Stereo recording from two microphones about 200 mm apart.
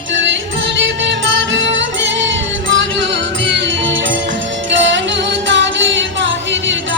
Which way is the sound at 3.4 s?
65° right (ahead or behind).